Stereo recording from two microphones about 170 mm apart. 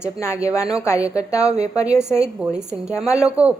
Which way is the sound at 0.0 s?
15° left (ahead or behind).